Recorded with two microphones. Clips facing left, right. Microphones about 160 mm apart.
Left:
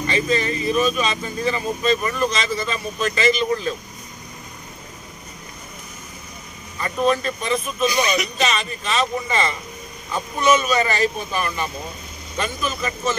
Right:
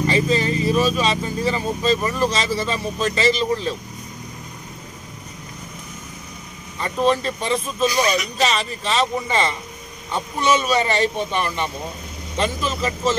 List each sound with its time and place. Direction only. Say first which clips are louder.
0.0 s speech: right 2 dB; 30° right (ahead or behind)
6.8 s speech: right 1 dB; 30° right (ahead or behind)